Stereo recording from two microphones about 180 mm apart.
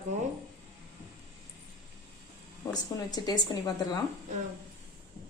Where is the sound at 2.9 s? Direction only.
20° left (ahead or behind).